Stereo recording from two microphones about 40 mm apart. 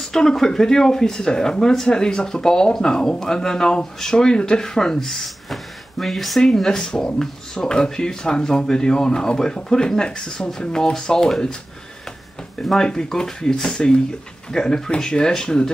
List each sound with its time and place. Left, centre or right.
0.1 s speech: centre
12.8 s speech: centre